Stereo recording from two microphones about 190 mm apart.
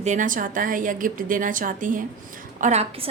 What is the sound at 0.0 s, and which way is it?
A woman's voice, 40° right (ahead or behind).